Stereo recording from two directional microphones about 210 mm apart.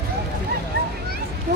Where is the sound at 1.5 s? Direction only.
50° right (ahead or behind).